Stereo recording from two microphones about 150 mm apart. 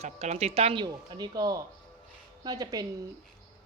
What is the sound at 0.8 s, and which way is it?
Speech, 25° right (ahead or behind).